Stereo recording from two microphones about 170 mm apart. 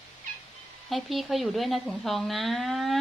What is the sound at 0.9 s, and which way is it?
Speech, centre (ahead or behind).